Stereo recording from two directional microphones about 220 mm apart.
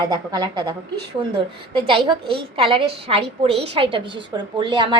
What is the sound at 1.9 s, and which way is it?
A woman's voice, 25° right (ahead or behind).